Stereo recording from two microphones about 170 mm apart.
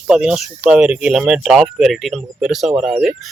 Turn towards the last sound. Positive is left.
turn(degrees=0)  # may be behind; listen again after turning